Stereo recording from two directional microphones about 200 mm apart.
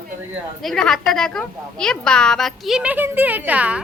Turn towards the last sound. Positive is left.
turn(degrees=-5)  # may be behind; listen again after turning